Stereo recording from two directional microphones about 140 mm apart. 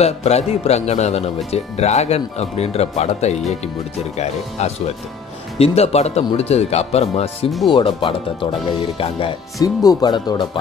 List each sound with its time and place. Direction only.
0.0 s speech: 50° left (ahead or behind)
7.7 s speech: 35° left (ahead or behind)
9.6 s speech: 25° left (ahead or behind)